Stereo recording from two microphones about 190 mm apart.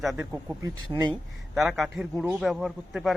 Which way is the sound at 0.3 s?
10° right (ahead or behind).